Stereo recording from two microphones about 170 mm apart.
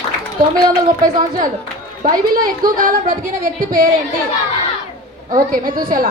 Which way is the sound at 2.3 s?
55° right (ahead or behind).